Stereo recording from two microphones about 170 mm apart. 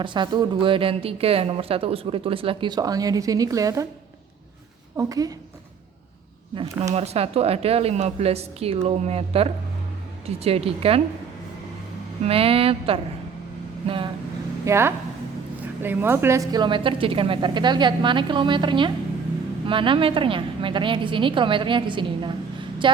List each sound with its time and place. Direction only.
0.0 s speech: 25° right (ahead or behind)
4.9 s speech: 20° right (ahead or behind)
6.9 s speech: 40° right (ahead or behind)
12.2 s speech: 35° right (ahead or behind)
14.6 s speech: 15° right (ahead or behind)